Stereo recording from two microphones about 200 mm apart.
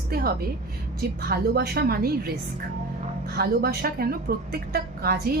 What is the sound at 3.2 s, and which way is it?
A woman's voice, 50° right (ahead or behind).